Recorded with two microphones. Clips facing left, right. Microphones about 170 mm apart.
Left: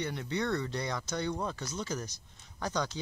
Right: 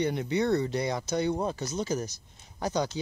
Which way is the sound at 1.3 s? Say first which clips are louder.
Right 6 dB; 25° right (ahead or behind).